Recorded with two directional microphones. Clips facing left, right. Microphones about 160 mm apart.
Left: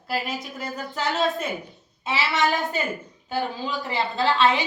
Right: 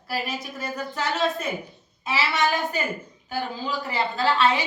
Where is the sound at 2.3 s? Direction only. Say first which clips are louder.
Left 2 dB; 20° left (ahead or behind).